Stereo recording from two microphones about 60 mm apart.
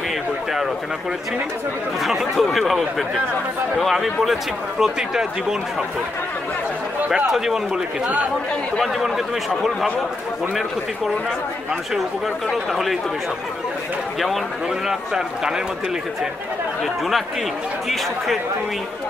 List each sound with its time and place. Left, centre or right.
2.0 s speech: centre
7.2 s a man's voice: centre
8.8 s speech: centre
12.4 s speech: centre
14.9 s a man's voice: centre
17.8 s speech: centre